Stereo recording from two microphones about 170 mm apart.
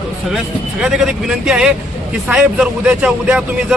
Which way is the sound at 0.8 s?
5° right (ahead or behind).